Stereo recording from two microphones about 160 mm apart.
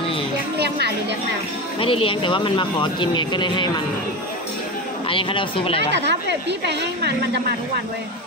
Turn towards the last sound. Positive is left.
turn(degrees=-90)